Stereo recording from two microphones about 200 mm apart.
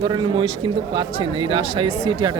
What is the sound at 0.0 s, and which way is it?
Speech, 20° right (ahead or behind).